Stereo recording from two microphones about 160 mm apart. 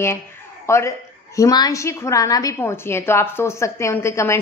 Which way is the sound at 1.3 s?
25° left (ahead or behind).